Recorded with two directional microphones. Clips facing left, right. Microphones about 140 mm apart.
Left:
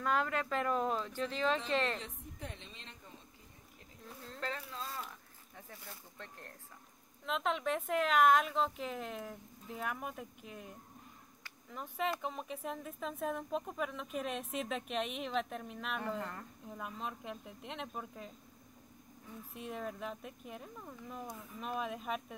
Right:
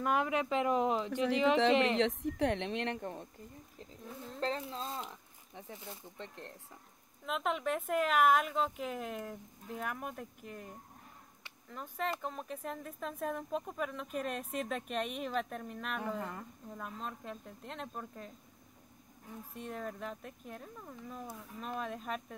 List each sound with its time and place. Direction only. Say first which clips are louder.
0.0 s speech: right 2 dB; 15° right (ahead or behind)
2.0 s a woman's voice: right 16 dB; 85° right; by 3.3 s 65° right (ahead or behind)
4.4 s speech: right 5 dB; 30° right (ahead or behind)
7.2 s speech: right 1 dB; 5° right (ahead or behind)
11.7 s speech: even; 5° left (ahead or behind)
19.5 s speech: even; 5° left (ahead or behind)